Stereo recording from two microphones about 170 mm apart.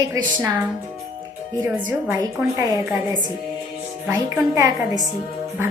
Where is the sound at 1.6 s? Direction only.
15° right (ahead or behind).